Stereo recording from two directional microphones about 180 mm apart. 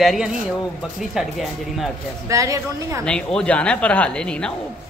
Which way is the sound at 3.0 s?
5° left (ahead or behind).